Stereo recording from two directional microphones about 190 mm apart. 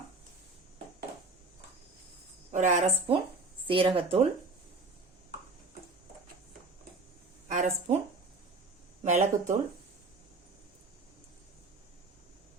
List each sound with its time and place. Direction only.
2.5 s a woman's voice: 40° right (ahead or behind)
7.4 s speech: 40° right (ahead or behind)
9.0 s a woman's voice: 40° right (ahead or behind)